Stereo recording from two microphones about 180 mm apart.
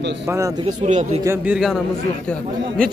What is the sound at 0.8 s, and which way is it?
Speech, 40° right (ahead or behind).